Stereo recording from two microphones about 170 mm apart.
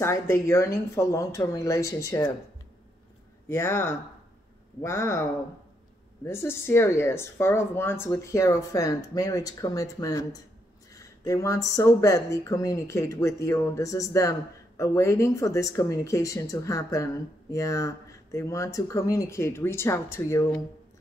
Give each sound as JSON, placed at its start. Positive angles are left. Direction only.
{"t": 0.0, "sound": "speech", "side_deg": 15}
{"t": 3.4, "sound": "speech", "side_deg": 15}